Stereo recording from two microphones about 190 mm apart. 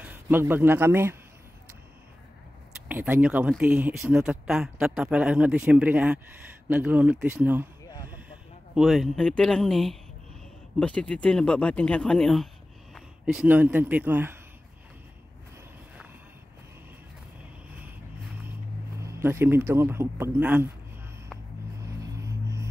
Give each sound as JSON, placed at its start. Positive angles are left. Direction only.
{"t": 0.0, "sound": "a man's voice", "side_deg": -10}
{"t": 2.9, "sound": "speech", "side_deg": -10}
{"t": 8.7, "sound": "speech", "side_deg": 0}
{"t": 19.0, "sound": "speech", "side_deg": -15}
{"t": 22.2, "sound": "music", "side_deg": -15}